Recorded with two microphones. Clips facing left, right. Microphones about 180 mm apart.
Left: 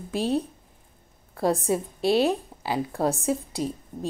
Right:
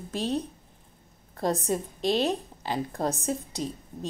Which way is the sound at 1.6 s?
10° left (ahead or behind).